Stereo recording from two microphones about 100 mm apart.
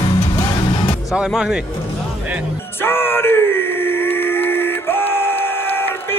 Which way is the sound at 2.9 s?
25° left (ahead or behind).